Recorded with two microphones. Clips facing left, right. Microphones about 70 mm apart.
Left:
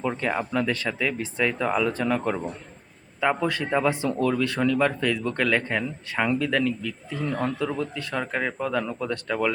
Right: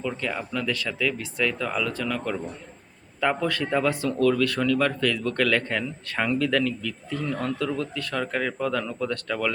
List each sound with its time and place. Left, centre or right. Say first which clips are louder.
0.0 s speech: left 3 dB; left
3.2 s speech: left 1 dB; centre